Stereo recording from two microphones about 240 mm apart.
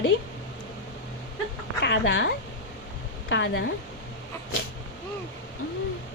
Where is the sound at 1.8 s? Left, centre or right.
Left.